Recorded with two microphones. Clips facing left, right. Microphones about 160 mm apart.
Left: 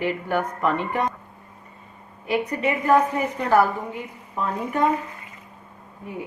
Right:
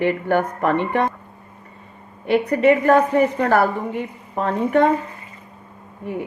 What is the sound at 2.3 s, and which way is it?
A woman's voice, 65° right (ahead or behind).